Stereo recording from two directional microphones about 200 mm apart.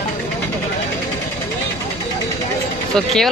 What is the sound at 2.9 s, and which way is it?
Speech, centre (ahead or behind).